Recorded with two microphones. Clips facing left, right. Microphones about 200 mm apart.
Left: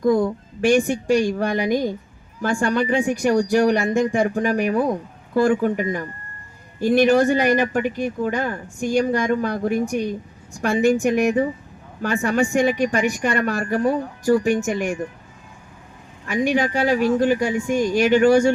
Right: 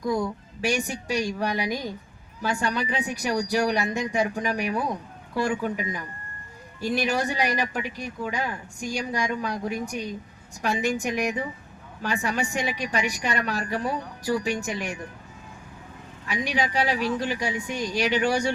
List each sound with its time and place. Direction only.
0.6 s speech: 50° left (ahead or behind)
16.2 s speech: 50° left (ahead or behind)